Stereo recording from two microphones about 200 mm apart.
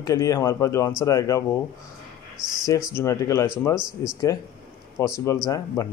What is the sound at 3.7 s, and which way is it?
Speech, 5° right (ahead or behind).